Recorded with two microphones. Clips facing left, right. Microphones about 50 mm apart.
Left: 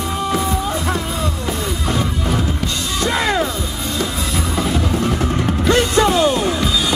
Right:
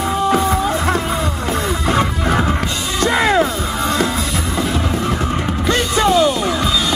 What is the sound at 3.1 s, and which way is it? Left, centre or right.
Music, right.